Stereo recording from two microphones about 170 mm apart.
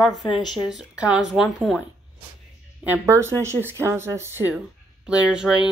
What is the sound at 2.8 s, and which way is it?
Speech, 15° right (ahead or behind).